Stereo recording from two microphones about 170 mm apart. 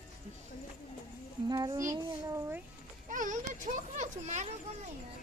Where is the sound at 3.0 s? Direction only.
45° right (ahead or behind).